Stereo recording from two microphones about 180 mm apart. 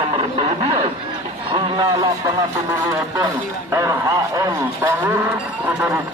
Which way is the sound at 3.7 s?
20° right (ahead or behind).